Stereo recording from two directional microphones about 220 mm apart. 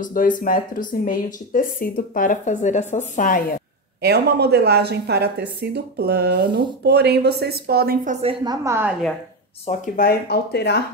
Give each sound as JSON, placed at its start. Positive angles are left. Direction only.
{"t": 0.0, "sound": "speech", "side_deg": 35}
{"t": 4.0, "sound": "speech", "side_deg": -45}
{"t": 8.6, "sound": "a woman's voice", "side_deg": -10}
{"t": 9.7, "sound": "speech", "side_deg": 40}